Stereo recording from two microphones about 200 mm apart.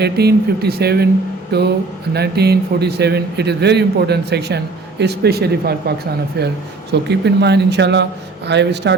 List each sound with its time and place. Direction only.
0.0 s a man's voice: 55° right (ahead or behind)
6.9 s a man's voice: 55° right (ahead or behind)